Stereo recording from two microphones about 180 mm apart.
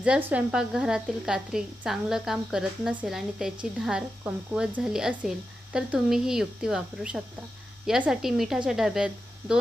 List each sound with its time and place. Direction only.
0.0 s a woman's voice: 5° right (ahead or behind)